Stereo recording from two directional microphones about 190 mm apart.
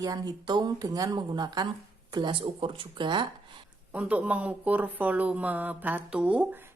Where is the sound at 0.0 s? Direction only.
20° right (ahead or behind).